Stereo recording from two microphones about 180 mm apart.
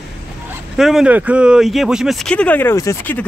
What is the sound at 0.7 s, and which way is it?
Speech, 5° right (ahead or behind).